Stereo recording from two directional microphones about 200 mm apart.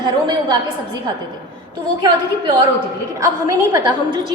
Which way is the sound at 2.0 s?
20° right (ahead or behind).